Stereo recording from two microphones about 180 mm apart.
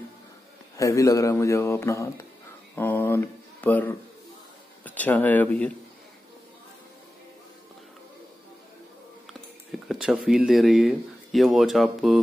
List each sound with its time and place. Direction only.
0.7 s speech: 20° left (ahead or behind)
2.7 s a sound: 10° left (ahead or behind)
4.8 s speech: 10° left (ahead or behind)
9.7 s speech: centre (ahead or behind)